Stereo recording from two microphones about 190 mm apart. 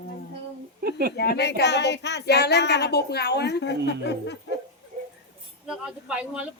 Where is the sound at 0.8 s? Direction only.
55° right (ahead or behind).